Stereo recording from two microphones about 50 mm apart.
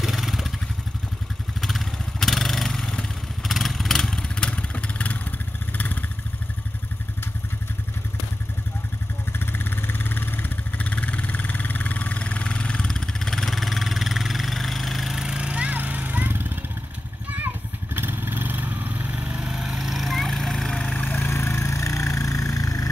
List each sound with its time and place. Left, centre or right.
0.0 s vehicle: centre
1.6 s motorcycle: centre
3.4 s vehicle: centre
4.4 s vehicle: left
9.4 s vehicle: left; by 15.2 s centre
15.2 s a sound: centre
15.8 s horse: right
16.3 s vehicle: right
17.9 s vehicle: right
19.4 s a sound: centre
20.8 s vehicle: left
21.2 s vehicle: left